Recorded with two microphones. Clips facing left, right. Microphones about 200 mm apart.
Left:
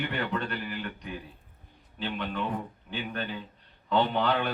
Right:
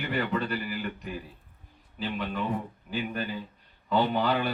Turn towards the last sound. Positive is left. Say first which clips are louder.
# right 1 dB
turn(degrees=-5)  # may be behind; listen again after turning